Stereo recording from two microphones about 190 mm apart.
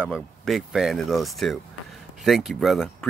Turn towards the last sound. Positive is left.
turn(degrees=0)  # may be behind; listen again after turning